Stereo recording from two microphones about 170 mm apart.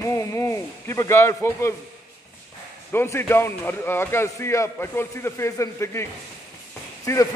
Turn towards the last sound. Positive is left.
turn(degrees=20)  # may be behind; listen again after turning